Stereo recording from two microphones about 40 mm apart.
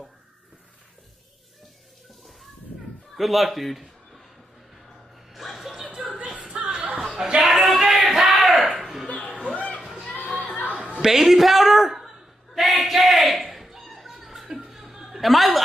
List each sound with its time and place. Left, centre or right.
3.2 s a man's voice: centre
5.3 s chuckle: centre
6.0 s music: right
7.3 s a sound: centre
9.0 s music: left
10.3 s a sound: left
11.0 s a woman's voice: centre
12.5 s a sound: centre
14.7 s chuckle: centre